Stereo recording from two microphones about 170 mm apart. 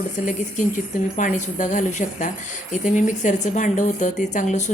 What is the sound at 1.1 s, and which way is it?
Speech, 45° left (ahead or behind).